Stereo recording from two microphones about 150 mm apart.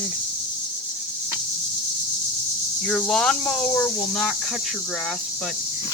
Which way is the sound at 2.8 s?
5° left (ahead or behind).